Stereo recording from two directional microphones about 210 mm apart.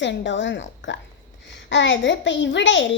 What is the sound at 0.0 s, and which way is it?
A woman's voice, 55° left (ahead or behind).